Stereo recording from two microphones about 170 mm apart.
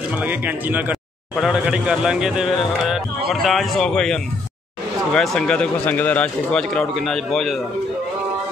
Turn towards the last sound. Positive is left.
turn(degrees=0)  # may be behind; listen again after turning